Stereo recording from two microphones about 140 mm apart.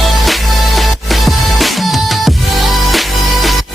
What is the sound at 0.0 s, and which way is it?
Music, centre (ahead or behind).